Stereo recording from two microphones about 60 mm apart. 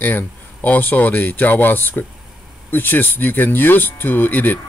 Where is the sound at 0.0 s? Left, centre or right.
Left.